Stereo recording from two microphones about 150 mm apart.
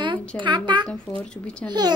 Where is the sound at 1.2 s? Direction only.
5° left (ahead or behind).